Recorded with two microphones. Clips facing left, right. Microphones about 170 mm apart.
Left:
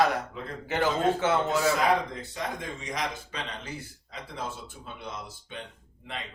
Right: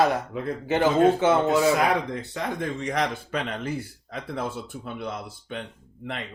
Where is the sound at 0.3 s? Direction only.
60° right (ahead or behind).